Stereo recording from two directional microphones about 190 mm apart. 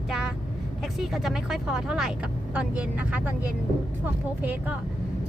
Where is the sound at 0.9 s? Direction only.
Centre (ahead or behind).